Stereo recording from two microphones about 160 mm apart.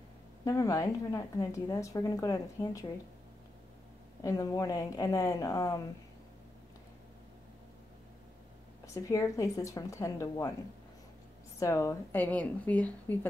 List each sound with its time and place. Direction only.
0.5 s a woman's voice: 20° left (ahead or behind)
4.2 s a woman's voice: 20° left (ahead or behind)
8.9 s a woman's voice: 20° left (ahead or behind)
11.6 s a woman's voice: 20° left (ahead or behind)